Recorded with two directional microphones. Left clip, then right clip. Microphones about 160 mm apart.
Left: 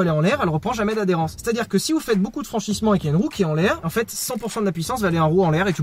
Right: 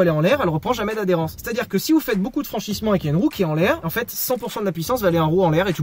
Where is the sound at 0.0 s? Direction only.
15° right (ahead or behind).